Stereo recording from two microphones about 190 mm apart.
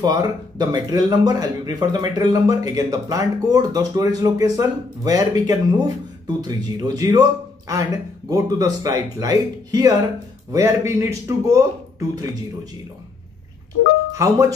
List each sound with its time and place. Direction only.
0.0 s a man's voice: 20° right (ahead or behind)
14.1 s a man's voice: 15° right (ahead or behind)